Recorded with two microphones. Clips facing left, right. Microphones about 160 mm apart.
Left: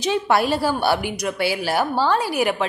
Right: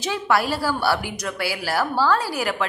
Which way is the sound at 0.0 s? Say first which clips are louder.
Left 3 dB; 20° left (ahead or behind).